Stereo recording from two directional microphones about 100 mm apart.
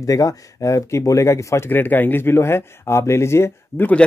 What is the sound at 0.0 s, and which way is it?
Speech, 35° left (ahead or behind).